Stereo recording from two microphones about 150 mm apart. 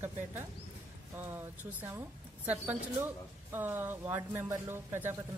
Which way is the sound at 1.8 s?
10° right (ahead or behind).